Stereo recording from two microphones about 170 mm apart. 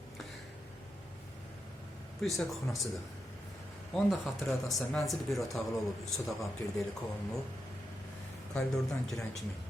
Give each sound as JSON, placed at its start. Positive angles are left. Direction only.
{"t": 2.2, "sound": "speech", "side_deg": 0}
{"t": 3.9, "sound": "speech", "side_deg": 0}
{"t": 8.5, "sound": "speech", "side_deg": 0}